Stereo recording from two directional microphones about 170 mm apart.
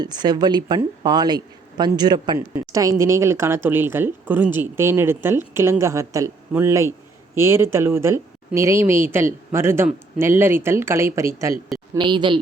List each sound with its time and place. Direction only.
0.0 s speech: 25° right (ahead or behind)
11.9 s speech: 30° right (ahead or behind)